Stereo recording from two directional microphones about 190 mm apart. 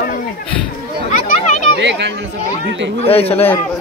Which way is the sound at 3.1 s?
30° left (ahead or behind).